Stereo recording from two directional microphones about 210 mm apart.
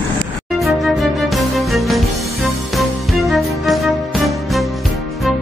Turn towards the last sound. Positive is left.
turn(degrees=0)  # may be behind; listen again after turning